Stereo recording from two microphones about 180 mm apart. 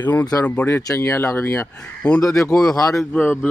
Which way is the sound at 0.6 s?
15° left (ahead or behind).